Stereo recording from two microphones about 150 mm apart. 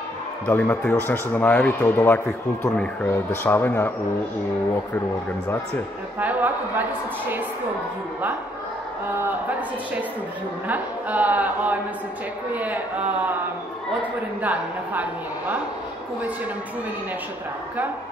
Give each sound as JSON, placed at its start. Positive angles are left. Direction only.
{"t": 0.5, "sound": "speech", "side_deg": 10}
{"t": 6.1, "sound": "a woman's voice", "side_deg": -10}
{"t": 9.1, "sound": "a woman's voice", "side_deg": -15}
{"t": 10.7, "sound": "a woman's voice", "side_deg": -10}
{"t": 14.4, "sound": "a woman's voice", "side_deg": -10}